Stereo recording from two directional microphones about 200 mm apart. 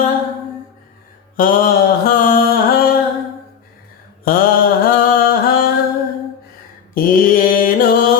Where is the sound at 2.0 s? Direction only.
45° left (ahead or behind).